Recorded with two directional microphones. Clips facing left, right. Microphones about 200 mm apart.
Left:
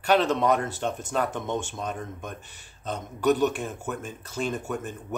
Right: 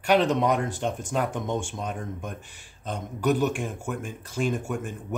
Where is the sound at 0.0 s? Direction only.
15° right (ahead or behind).